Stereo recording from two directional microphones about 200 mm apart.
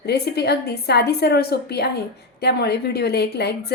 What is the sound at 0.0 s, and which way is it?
A woman's voice, 55° left (ahead or behind).